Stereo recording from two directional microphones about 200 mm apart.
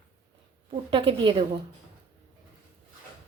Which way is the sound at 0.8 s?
25° right (ahead or behind).